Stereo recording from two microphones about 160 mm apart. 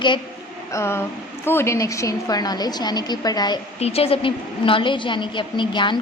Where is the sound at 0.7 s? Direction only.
15° left (ahead or behind).